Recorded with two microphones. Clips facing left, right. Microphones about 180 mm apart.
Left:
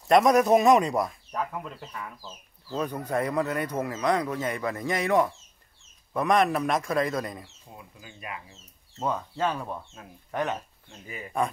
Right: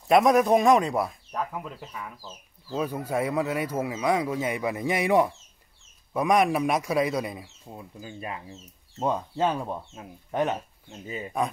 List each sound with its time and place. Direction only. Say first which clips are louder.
0.1 s a man's voice: even; centre (ahead or behind)
7.7 s speech: right 7 dB; 30° right (ahead or behind)
9.0 s speech: right 3 dB; 20° right (ahead or behind)